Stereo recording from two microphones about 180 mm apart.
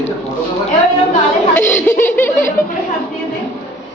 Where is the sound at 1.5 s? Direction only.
10° left (ahead or behind).